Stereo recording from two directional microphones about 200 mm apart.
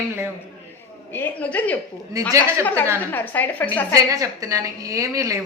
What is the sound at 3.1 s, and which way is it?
Speech, 10° left (ahead or behind).